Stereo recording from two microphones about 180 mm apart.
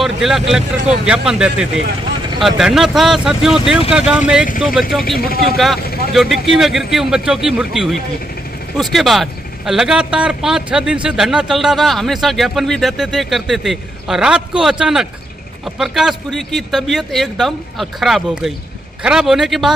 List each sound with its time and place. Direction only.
0.0 s a man's voice: centre (ahead or behind)
5.2 s speech: 55° left (ahead or behind)
6.1 s a man's voice: centre (ahead or behind)